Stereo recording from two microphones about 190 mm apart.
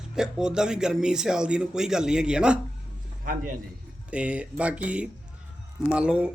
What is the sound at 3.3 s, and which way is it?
Speech, 45° right (ahead or behind).